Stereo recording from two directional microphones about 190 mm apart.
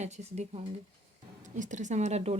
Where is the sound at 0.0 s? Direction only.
35° right (ahead or behind).